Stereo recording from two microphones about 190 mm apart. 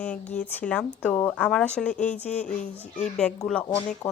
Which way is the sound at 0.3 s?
5° left (ahead or behind).